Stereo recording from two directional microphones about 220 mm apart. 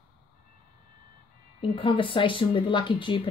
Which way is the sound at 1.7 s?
25° left (ahead or behind).